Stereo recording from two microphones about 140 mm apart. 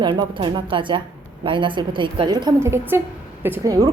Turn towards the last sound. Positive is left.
turn(degrees=-25)  # may be behind; listen again after turning